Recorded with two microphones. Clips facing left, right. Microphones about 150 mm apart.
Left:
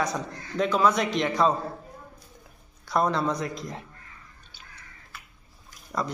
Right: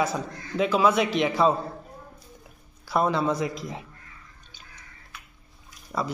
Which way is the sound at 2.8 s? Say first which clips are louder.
Right 1 dB; 5° right (ahead or behind).